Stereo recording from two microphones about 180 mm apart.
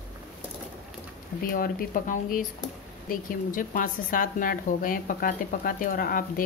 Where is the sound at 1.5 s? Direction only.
50° left (ahead or behind).